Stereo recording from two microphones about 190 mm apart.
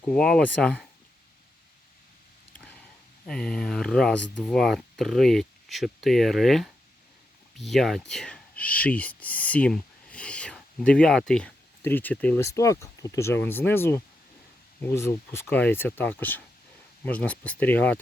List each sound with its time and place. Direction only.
0.0 s speech: 5° left (ahead or behind)
2.6 s a sound: 5° left (ahead or behind)
3.2 s speech: 5° left (ahead or behind)